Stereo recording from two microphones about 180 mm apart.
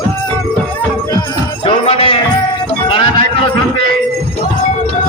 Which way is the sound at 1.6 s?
30° left (ahead or behind).